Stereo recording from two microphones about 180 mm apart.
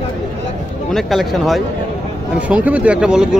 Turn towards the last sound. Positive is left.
turn(degrees=-5)  # may be behind; listen again after turning